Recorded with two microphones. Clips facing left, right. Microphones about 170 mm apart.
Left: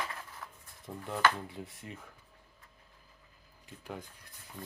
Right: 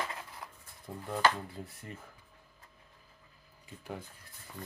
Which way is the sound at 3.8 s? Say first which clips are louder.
Right 1 dB; centre (ahead or behind).